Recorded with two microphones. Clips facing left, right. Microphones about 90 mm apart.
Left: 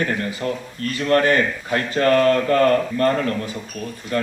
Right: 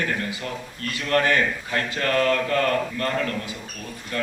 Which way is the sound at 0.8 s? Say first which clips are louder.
Left 5 dB; 35° left (ahead or behind).